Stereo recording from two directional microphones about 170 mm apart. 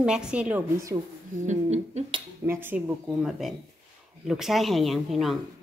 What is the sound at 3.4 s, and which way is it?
A woman's voice, centre (ahead or behind).